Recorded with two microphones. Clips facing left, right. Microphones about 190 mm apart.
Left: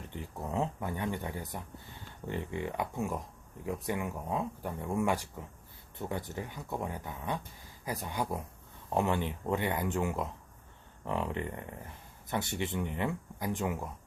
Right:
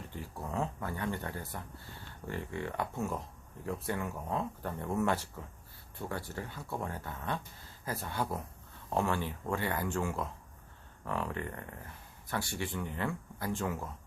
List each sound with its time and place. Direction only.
0.1 s speech: 20° left (ahead or behind)